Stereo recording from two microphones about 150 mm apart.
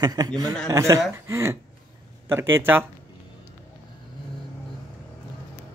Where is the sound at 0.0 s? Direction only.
25° right (ahead or behind).